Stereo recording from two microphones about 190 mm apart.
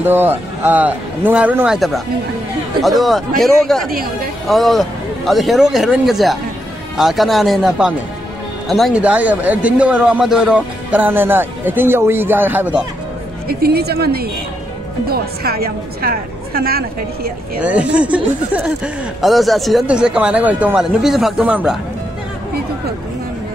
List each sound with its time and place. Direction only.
0.0 s a man's voice: 10° right (ahead or behind)
3.9 s a woman's voice: 50° right (ahead or behind)
4.5 s a man's voice: centre (ahead or behind)
13.5 s a woman's voice: 55° right (ahead or behind)
17.6 s a man's voice: 5° right (ahead or behind)